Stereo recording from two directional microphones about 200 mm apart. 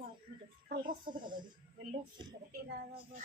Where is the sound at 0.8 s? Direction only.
25° right (ahead or behind).